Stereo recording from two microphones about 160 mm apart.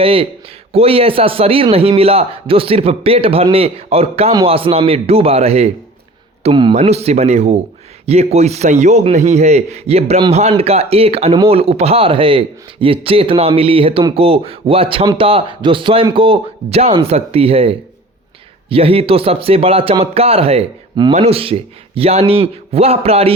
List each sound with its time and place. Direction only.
0.0 s a man's voice: 35° right (ahead or behind)